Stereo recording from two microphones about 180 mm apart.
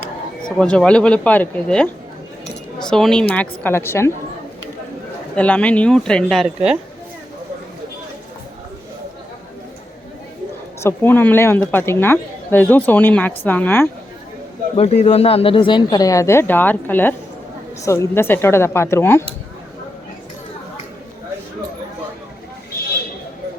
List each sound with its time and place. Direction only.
0.4 s a woman's voice: 5° left (ahead or behind)
5.4 s speech: 5° left (ahead or behind)
10.8 s a woman's voice: 10° left (ahead or behind)
14.8 s a woman's voice: 35° left (ahead or behind); by 19.2 s 15° left (ahead or behind)